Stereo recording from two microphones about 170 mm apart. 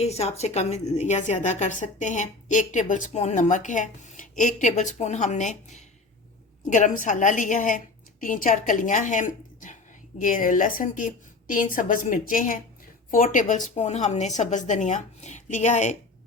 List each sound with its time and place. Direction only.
0.0 s a woman's voice: 40° left (ahead or behind)